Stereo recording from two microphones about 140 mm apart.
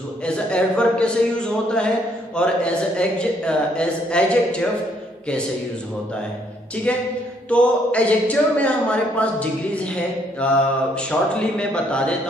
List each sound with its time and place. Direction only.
0.2 s a man's voice: 5° left (ahead or behind)
6.9 s a man's voice: 10° left (ahead or behind)